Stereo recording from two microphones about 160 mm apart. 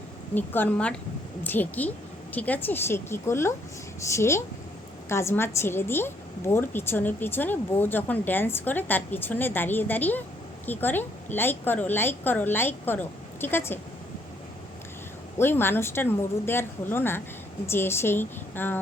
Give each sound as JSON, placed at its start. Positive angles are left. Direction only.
{"t": 0.3, "sound": "a woman's voice", "side_deg": 10}
{"t": 15.4, "sound": "a woman's voice", "side_deg": 15}